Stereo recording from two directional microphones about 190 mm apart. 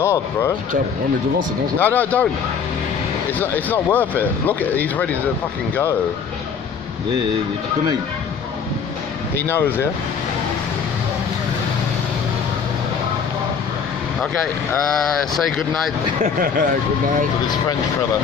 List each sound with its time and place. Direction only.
0.0 s speech: 15° left (ahead or behind)
1.8 s speech: 10° left (ahead or behind)
3.3 s speech: 10° left (ahead or behind)
9.5 s speech: 10° left (ahead or behind)
14.2 s speech: 5° left (ahead or behind)
16.2 s speech: 45° right (ahead or behind)